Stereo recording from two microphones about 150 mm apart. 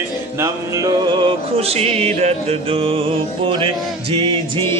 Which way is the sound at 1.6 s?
40° right (ahead or behind).